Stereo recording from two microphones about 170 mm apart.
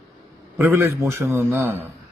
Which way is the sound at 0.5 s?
15° right (ahead or behind).